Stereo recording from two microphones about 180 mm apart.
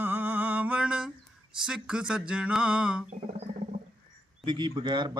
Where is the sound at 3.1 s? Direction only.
40° right (ahead or behind).